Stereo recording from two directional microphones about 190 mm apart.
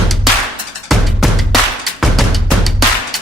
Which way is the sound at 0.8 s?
Centre (ahead or behind).